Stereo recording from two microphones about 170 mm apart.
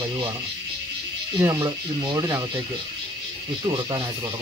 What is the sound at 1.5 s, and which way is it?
Speech, 25° right (ahead or behind).